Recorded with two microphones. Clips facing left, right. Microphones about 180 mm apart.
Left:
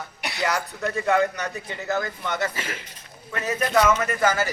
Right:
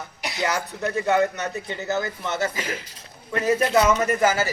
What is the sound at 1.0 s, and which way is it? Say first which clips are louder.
A man's voice: right 1 dB; 25° right (ahead or behind).